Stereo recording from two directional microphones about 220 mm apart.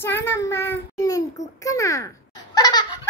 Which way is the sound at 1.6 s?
15° left (ahead or behind).